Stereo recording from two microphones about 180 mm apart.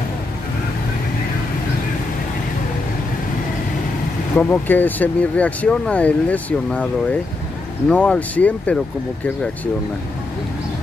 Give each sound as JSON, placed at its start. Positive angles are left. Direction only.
{"t": 4.4, "sound": "speech", "side_deg": 10}
{"t": 7.9, "sound": "speech", "side_deg": 5}